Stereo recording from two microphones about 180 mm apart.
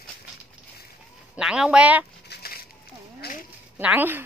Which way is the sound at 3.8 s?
10° right (ahead or behind).